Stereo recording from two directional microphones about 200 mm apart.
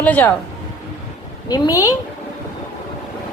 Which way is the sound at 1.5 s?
15° left (ahead or behind).